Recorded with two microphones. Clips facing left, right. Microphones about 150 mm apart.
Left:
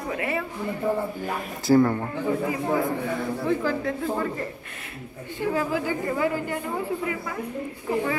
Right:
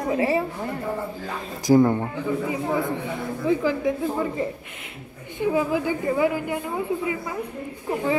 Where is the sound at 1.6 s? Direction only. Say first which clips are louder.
Right 2 dB; 15° right (ahead or behind).